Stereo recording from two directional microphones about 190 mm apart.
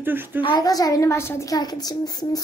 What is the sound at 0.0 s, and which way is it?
Speech, 10° right (ahead or behind).